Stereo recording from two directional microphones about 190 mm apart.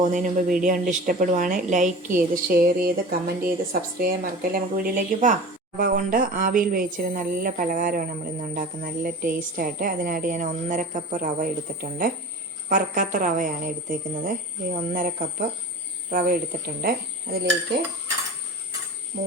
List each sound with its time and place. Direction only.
0.0 s a woman's voice: 40° right (ahead or behind)